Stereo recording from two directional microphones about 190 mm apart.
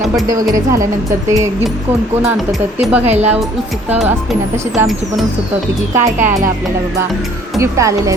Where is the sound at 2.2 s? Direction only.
Centre (ahead or behind).